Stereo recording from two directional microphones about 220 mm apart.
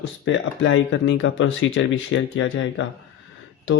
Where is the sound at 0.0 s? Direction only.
60° left (ahead or behind).